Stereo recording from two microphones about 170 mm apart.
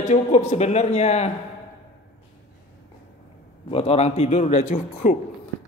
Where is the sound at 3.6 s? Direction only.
35° left (ahead or behind).